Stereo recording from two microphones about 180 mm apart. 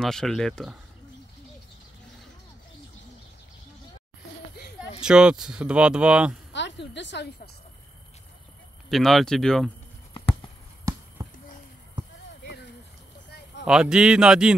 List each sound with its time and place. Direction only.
0.0 s speech: 5° left (ahead or behind)
5.0 s speech: 5° right (ahead or behind)
6.5 s speech: 75° left (ahead or behind)
8.8 s speech: centre (ahead or behind)
11.2 s a sound: 20° right (ahead or behind)
13.7 s speech: 5° right (ahead or behind)